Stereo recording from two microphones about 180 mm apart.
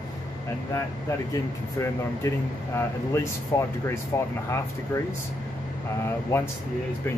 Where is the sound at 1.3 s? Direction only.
15° left (ahead or behind).